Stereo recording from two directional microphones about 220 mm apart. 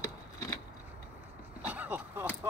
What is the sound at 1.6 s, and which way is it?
Vehicle, 5° right (ahead or behind).